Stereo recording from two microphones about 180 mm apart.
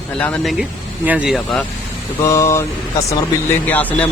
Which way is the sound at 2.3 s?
15° left (ahead or behind).